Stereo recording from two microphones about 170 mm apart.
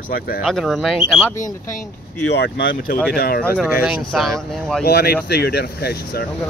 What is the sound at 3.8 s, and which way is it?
Speech, centre (ahead or behind).